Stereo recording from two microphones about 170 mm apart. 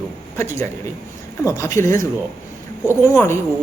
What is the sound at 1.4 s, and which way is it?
A woman's voice, 15° left (ahead or behind).